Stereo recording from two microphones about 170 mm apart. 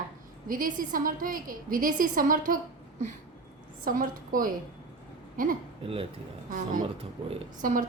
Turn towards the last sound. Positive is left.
turn(degrees=-50)  # may be behind; listen again after turning